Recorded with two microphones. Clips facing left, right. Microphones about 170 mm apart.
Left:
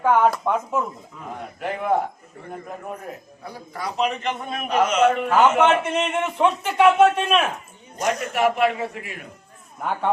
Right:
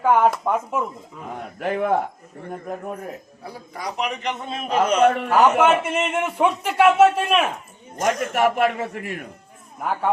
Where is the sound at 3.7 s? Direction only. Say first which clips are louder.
Left 3 dB; 15° right (ahead or behind); by 5.0 s 30° right (ahead or behind).